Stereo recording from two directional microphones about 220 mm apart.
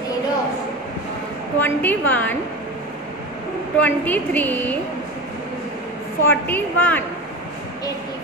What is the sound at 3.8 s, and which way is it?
Speech, 5° left (ahead or behind).